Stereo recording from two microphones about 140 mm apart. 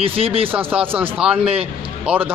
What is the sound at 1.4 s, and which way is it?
Speech, 45° right (ahead or behind).